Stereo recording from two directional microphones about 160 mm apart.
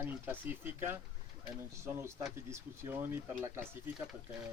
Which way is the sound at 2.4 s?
15° right (ahead or behind).